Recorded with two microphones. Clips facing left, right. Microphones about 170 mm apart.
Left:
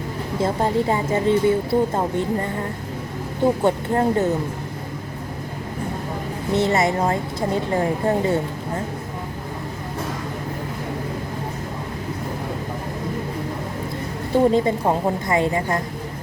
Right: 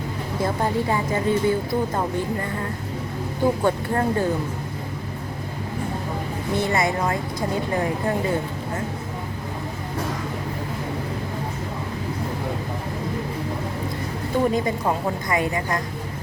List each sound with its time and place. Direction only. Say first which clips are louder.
0.3 s speech: left 3 dB; 25° left (ahead or behind)
3.6 s speech: left 3 dB; 25° left (ahead or behind)
6.5 s speech: left 3 dB; 25° left (ahead or behind)
14.5 s speech: left 4 dB; 25° left (ahead or behind)